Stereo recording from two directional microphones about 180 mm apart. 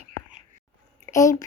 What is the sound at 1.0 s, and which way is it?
Speech, 15° left (ahead or behind).